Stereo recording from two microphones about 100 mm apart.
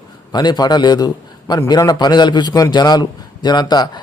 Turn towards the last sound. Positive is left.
turn(degrees=40)  # may be behind; listen again after turning